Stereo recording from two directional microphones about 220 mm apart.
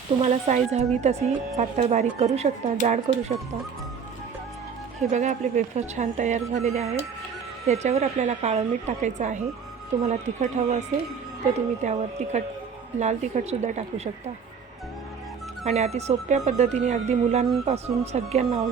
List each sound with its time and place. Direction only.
0.2 s speech: 30° right (ahead or behind)
5.1 s speech: 35° right (ahead or behind)
15.6 s speech: 30° right (ahead or behind)